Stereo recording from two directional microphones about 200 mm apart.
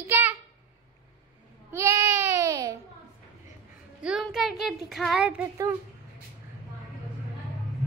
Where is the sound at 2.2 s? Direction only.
15° right (ahead or behind).